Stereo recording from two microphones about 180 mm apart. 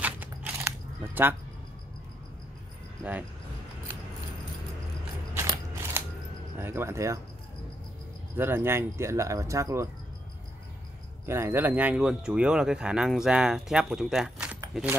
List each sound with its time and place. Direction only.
0.0 s a sound: 10° right (ahead or behind)
3.0 s speech: 10° right (ahead or behind)
5.3 s mechanisms: 15° right (ahead or behind)
6.6 s speech: 15° right (ahead or behind)
8.4 s speech: 10° right (ahead or behind)
11.2 s speech: 15° right (ahead or behind)